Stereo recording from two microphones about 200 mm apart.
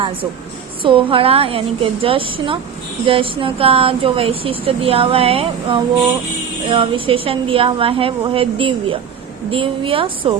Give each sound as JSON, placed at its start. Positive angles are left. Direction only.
{"t": 0.8, "sound": "speech", "side_deg": -25}